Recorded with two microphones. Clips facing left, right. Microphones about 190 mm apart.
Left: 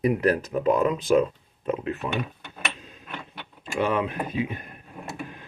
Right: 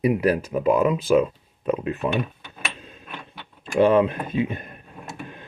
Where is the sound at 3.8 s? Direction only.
25° right (ahead or behind).